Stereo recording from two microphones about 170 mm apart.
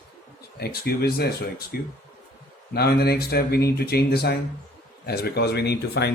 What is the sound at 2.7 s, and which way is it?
Speech, 70° left (ahead or behind).